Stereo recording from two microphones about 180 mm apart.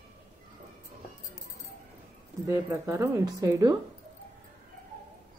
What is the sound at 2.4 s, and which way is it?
A woman's voice, 15° right (ahead or behind).